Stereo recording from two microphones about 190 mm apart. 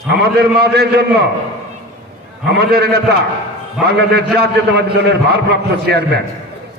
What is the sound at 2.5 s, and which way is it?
A man's voice, 55° right (ahead or behind).